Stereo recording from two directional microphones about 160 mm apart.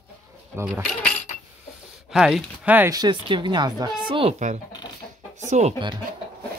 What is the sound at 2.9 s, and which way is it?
Speech, 25° right (ahead or behind).